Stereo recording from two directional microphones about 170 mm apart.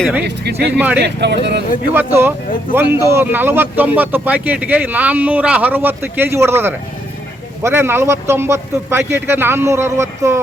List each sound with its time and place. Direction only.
0.3 s speech: 75° right (ahead or behind)
0.7 s speech: 10° right (ahead or behind)
0.9 s speech: 80° right
1.9 s speech: 10° right (ahead or behind)